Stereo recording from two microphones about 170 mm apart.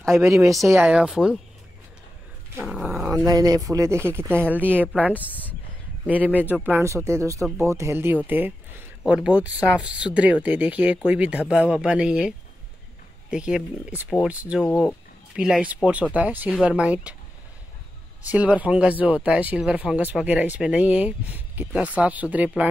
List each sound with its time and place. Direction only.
0.7 s speech: 5° right (ahead or behind)
2.6 s dog: centre (ahead or behind)
3.3 s speech: 20° right (ahead or behind)
5.1 s speech: 10° left (ahead or behind)
6.0 s speech: 10° right (ahead or behind)
18.2 s speech: 10° right (ahead or behind)